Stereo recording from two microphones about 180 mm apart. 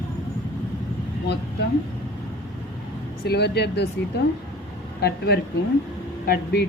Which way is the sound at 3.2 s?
65° left (ahead or behind).